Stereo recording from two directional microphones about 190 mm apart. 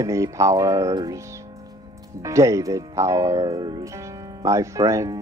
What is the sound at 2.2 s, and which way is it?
Speech, 15° right (ahead or behind).